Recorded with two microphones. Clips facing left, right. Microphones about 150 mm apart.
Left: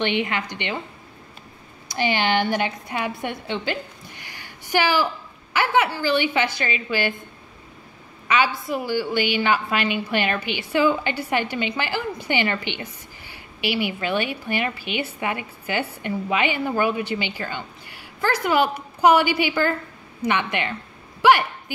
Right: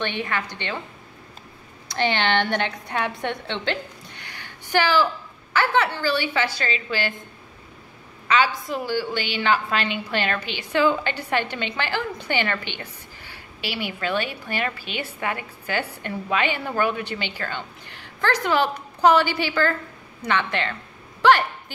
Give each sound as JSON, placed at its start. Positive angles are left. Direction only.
{"t": 0.0, "sound": "a woman's voice", "side_deg": 15}
{"t": 1.9, "sound": "a woman's voice", "side_deg": 10}
{"t": 8.3, "sound": "a woman's voice", "side_deg": 10}
{"t": 21.2, "sound": "a sound", "side_deg": 10}